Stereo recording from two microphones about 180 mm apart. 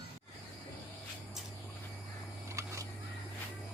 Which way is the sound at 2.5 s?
15° right (ahead or behind).